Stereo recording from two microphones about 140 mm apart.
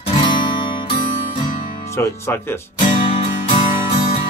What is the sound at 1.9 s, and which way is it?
Speech, 20° left (ahead or behind).